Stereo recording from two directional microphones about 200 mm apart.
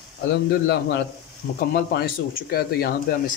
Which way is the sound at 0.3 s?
55° left (ahead or behind).